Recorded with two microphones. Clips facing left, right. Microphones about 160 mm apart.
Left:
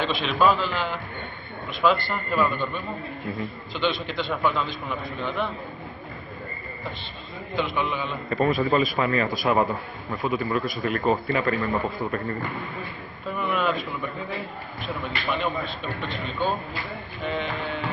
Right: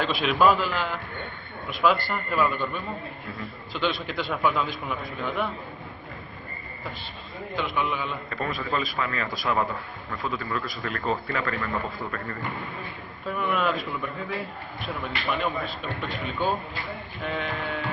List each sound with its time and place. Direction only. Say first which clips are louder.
0.0 s a man's voice: even; 5° right (ahead or behind)
7.5 s a man's voice: left 2 dB; centre (ahead or behind)
8.3 s a man's voice: left 10 dB; 20° left (ahead or behind)
13.3 s a man's voice: left 1 dB; centre (ahead or behind)